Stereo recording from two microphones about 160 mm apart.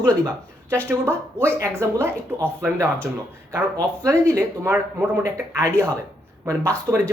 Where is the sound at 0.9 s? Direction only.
15° right (ahead or behind).